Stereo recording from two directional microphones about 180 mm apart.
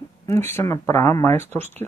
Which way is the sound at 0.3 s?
15° left (ahead or behind).